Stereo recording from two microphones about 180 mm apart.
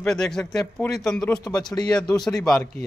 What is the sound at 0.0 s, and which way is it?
Speech, centre (ahead or behind).